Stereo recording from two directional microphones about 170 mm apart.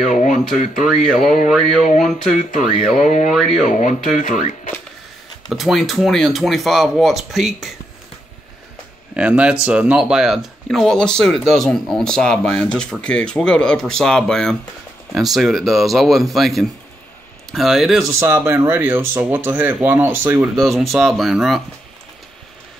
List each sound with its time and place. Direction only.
0.1 s a sound: 45° left (ahead or behind)
0.8 s speech: centre (ahead or behind)
1.2 s speech: 50° left (ahead or behind)
1.5 s speech: centre (ahead or behind)
1.9 s speech: 45° left (ahead or behind)
3.3 s speech: centre (ahead or behind)
3.6 s speech: 50° left (ahead or behind)
5.5 s speech: centre (ahead or behind)
9.1 s speech: 5° right (ahead or behind)
18.0 s speech: 15° right (ahead or behind)
20.5 s speech: centre (ahead or behind)